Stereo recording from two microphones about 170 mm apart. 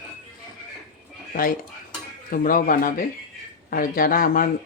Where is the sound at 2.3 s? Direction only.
55° left (ahead or behind).